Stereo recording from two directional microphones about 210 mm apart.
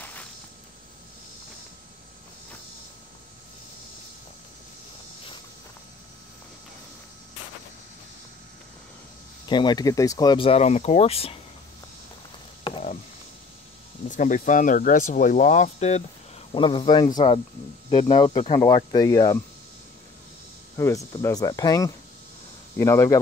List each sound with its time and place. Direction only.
9.5 s speech: 20° left (ahead or behind)
12.7 s a sound: 20° left (ahead or behind)
14.1 s speech: 40° left (ahead or behind)
16.5 s speech: 25° left (ahead or behind)
20.7 s speech: 15° left (ahead or behind)